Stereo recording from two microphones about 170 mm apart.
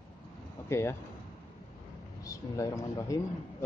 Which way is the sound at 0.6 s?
15° left (ahead or behind).